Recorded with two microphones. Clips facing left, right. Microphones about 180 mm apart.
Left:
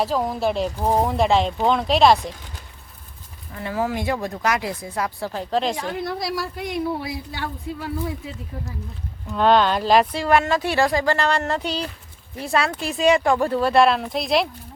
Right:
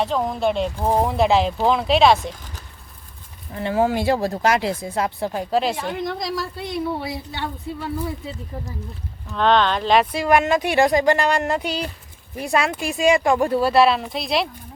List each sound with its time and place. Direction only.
0.0 s speech: centre (ahead or behind)
3.5 s speech: 25° right (ahead or behind); by 6.0 s 5° right (ahead or behind)
6.0 s speech: 10° left (ahead or behind)
7.0 s speech: 25° right (ahead or behind)
9.3 s speech: 5° left (ahead or behind)
10.1 s speech: 15° right (ahead or behind)